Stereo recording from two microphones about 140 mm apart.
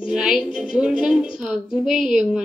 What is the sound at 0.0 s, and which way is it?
A woman's voice, 5° right (ahead or behind).